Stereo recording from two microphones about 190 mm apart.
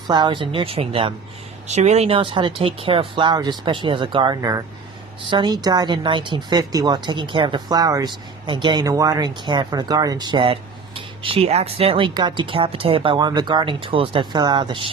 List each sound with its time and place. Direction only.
0.1 s speech: 25° right (ahead or behind)